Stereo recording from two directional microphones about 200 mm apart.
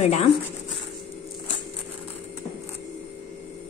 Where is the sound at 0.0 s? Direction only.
30° left (ahead or behind).